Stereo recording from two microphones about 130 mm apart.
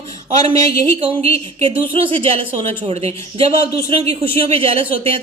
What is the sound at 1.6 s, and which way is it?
A woman's voice, 45° right (ahead or behind).